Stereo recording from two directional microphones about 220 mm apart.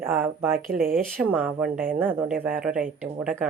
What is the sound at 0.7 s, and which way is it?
Speech, 40° right (ahead or behind).